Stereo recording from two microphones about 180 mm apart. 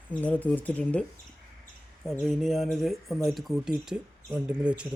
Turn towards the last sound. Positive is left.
turn(degrees=-5)  # may be behind; listen again after turning